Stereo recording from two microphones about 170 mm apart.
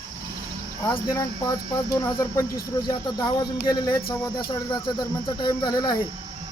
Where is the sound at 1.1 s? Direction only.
20° left (ahead or behind).